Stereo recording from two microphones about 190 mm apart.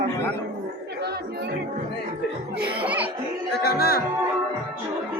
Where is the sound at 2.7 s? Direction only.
10° right (ahead or behind).